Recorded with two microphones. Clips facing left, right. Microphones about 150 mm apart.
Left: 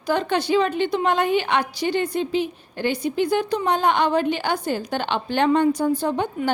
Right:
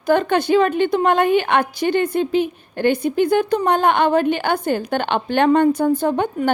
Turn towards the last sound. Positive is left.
turn(degrees=-55)  # may be behind; listen again after turning